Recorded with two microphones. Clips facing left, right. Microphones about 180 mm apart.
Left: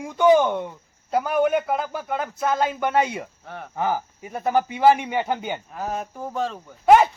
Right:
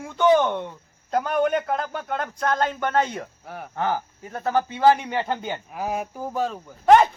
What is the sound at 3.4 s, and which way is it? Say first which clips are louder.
Speech: even; 5° right (ahead or behind).